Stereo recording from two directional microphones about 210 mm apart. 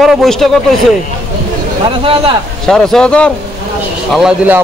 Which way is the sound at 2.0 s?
25° right (ahead or behind).